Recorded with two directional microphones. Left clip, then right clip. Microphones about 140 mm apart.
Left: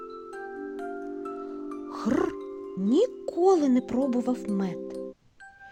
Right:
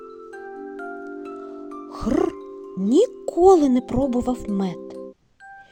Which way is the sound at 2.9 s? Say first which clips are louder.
Right 6 dB; 25° right (ahead or behind).